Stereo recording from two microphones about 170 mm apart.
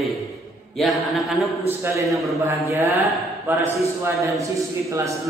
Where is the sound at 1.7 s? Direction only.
15° right (ahead or behind).